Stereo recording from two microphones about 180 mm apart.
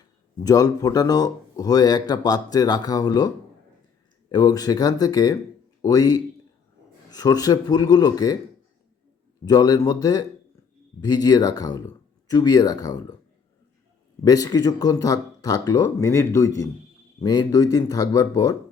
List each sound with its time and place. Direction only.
0.3 s speech: 20° left (ahead or behind)
9.4 s speech: 20° left (ahead or behind)
14.3 s speech: 20° left (ahead or behind)